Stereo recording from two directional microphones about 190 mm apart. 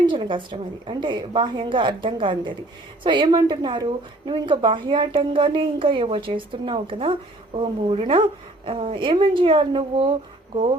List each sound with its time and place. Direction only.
0.1 s speech: 25° right (ahead or behind)